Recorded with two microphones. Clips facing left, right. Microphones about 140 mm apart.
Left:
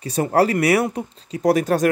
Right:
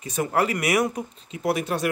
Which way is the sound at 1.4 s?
40° left (ahead or behind).